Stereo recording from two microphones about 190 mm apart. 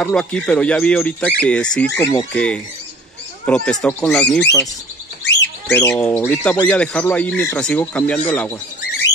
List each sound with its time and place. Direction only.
0.0 s speech: 5° left (ahead or behind)
5.2 s bird: 65° left (ahead or behind)
5.8 s speech: 10° left (ahead or behind)